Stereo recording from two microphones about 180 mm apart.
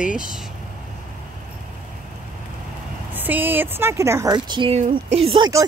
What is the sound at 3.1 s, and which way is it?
Speech, 10° right (ahead or behind).